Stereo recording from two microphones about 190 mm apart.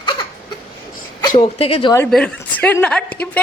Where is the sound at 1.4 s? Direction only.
30° left (ahead or behind).